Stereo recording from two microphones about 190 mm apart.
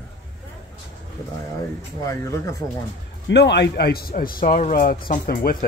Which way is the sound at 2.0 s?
15° left (ahead or behind).